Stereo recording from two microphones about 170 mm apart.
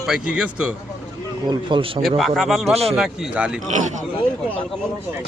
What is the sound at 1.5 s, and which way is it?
Speech, 30° right (ahead or behind).